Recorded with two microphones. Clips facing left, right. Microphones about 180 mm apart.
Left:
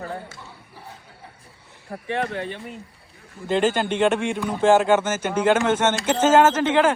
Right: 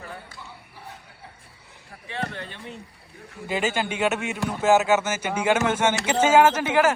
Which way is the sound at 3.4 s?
5° right (ahead or behind).